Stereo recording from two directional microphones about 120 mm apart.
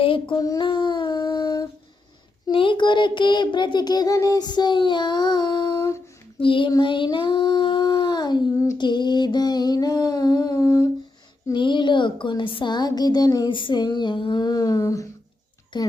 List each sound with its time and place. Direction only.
0.0 s child singing: 45° left (ahead or behind)
0.3 s child singing: 30° left (ahead or behind)
2.5 s a woman's voice: 45° left (ahead or behind)
6.4 s child singing: 45° left (ahead or behind)
6.7 s a woman's voice: 40° left (ahead or behind)
11.5 s a woman's voice: 40° left (ahead or behind)
15.7 s a woman's voice: 40° left (ahead or behind)